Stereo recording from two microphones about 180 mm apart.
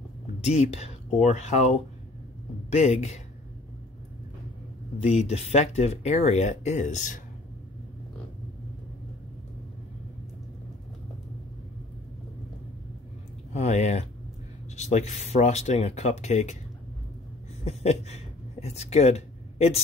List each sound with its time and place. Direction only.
0.5 s speech: 40° left (ahead or behind)
5.2 s speech: 35° left (ahead or behind)
13.5 s speech: 40° left (ahead or behind)
17.6 s speech: 35° left (ahead or behind)